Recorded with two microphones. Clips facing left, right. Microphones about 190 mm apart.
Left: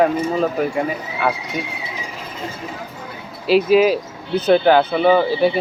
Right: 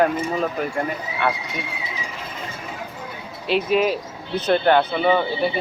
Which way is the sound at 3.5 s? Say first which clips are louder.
Left 6 dB; 5° left (ahead or behind).